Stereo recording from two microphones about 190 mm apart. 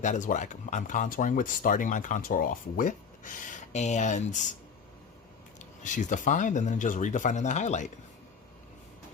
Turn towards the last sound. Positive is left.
turn(degrees=40)  # may be behind; listen again after turning